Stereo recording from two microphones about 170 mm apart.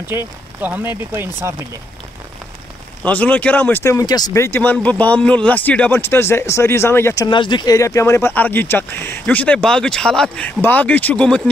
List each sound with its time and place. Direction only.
0.1 s speech: 15° right (ahead or behind)
3.0 s speech: 10° left (ahead or behind)
7.2 s speech: 30° left (ahead or behind); by 11.4 s 5° left (ahead or behind)